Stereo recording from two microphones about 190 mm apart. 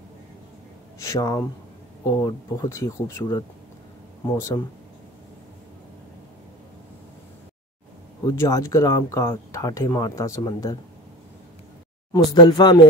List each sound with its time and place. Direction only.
0.9 s speech: 15° left (ahead or behind)
8.3 s speech: 15° left (ahead or behind)
12.3 s speech: 20° left (ahead or behind)